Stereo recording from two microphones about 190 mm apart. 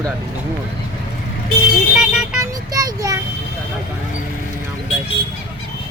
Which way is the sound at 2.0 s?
5° right (ahead or behind).